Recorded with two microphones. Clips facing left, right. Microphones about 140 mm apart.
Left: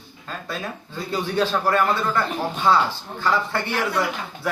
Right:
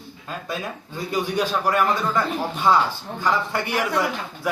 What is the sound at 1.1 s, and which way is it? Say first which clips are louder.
A man's voice: left 1 dB; 10° right (ahead or behind).